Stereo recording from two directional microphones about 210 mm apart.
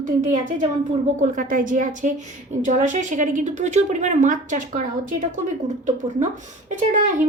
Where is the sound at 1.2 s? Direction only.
40° right (ahead or behind).